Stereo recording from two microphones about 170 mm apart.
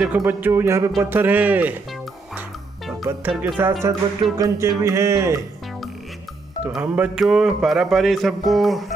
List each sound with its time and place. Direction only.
0.0 s speech: 10° right (ahead or behind)
3.1 s speech: 10° right (ahead or behind)
6.6 s music: 5° right (ahead or behind)